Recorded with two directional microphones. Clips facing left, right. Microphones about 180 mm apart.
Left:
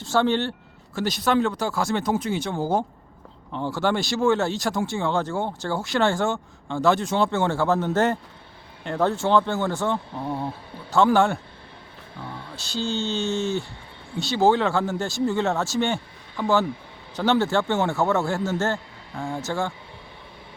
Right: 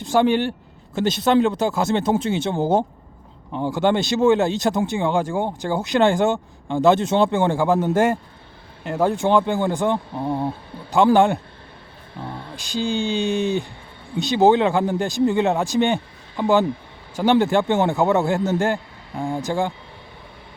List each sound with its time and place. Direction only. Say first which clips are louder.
0.0 s speech: right 4 dB; 15° right (ahead or behind)
0.9 s speech: right 5 dB; 25° right (ahead or behind)
12.5 s speech: right 4 dB; 15° right (ahead or behind)